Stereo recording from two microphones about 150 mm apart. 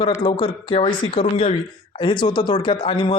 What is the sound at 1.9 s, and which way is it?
A man's voice, 30° left (ahead or behind).